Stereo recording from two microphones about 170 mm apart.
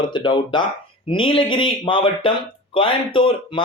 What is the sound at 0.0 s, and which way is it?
Speech, 30° left (ahead or behind).